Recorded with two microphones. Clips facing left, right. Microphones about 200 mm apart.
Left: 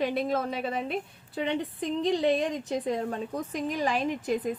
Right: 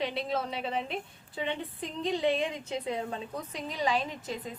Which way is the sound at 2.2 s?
40° left (ahead or behind).